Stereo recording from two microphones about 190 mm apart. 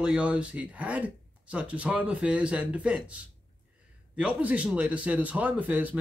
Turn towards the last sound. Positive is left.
turn(degrees=-10)  # may be behind; listen again after turning